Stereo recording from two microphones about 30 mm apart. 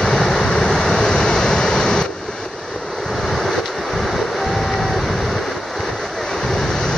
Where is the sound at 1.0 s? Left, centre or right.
Left.